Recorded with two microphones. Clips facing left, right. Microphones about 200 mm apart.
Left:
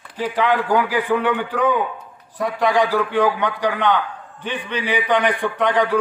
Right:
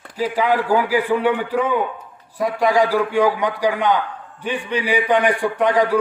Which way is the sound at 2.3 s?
10° right (ahead or behind).